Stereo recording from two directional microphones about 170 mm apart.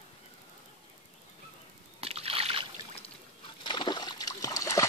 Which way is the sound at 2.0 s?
35° right (ahead or behind).